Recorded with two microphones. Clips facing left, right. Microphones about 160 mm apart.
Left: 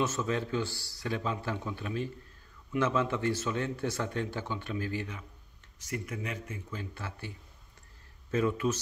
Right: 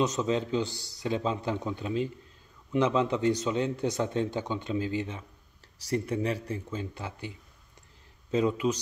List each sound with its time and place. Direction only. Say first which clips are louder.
0.0 s speech: right 4 dB; 20° right (ahead or behind)
5.8 s speech: right 8 dB; 35° right (ahead or behind)
6.8 s speech: right 4 dB; 20° right (ahead or behind)